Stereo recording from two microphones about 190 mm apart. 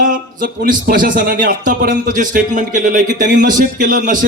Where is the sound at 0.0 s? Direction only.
45° right (ahead or behind).